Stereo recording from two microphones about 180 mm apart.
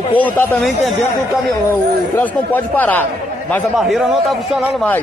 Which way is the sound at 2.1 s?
10° left (ahead or behind).